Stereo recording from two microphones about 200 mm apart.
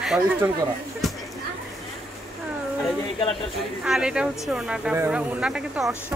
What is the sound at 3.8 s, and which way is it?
Speech, 5° right (ahead or behind).